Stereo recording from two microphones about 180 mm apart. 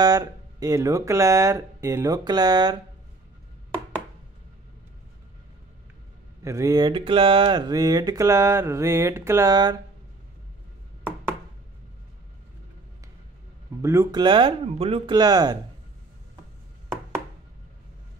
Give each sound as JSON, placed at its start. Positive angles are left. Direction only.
{"t": 0.0, "sound": "speech", "side_deg": -20}
{"t": 6.4, "sound": "speech", "side_deg": -15}
{"t": 13.7, "sound": "speech", "side_deg": -15}
{"t": 14.2, "sound": "speech", "side_deg": -30}